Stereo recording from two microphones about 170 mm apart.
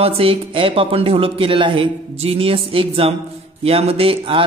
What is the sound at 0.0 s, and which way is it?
Speech, 35° right (ahead or behind).